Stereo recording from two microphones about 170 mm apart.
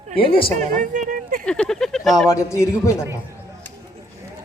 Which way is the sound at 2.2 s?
20° left (ahead or behind).